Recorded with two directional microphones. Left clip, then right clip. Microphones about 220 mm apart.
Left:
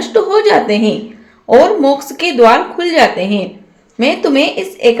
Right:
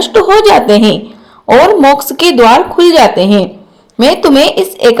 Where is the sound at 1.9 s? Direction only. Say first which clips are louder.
Right 4 dB; 30° right (ahead or behind).